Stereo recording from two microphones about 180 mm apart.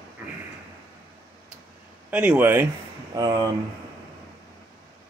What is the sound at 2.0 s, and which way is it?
Speech, 10° right (ahead or behind).